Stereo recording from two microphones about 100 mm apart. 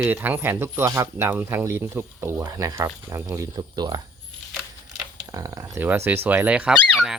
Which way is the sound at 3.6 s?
45° right (ahead or behind).